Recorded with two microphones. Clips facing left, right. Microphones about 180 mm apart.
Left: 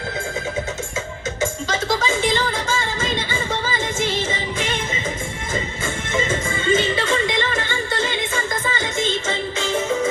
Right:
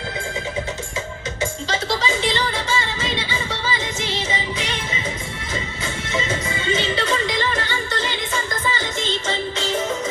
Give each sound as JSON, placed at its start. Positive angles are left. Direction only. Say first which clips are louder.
{"t": 1.4, "sound": "music", "louder": "left 1 dB", "side_deg": 50}